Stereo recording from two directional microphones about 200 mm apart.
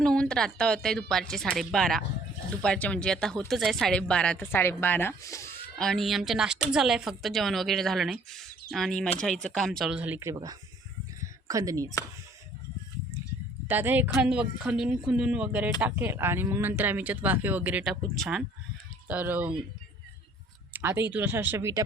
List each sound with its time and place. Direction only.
0.0 s speech: 5° left (ahead or behind)
5.7 s speech: centre (ahead or behind); by 11.9 s 15° right (ahead or behind)
13.7 s speech: 10° right (ahead or behind)
20.7 s speech: 10° right (ahead or behind)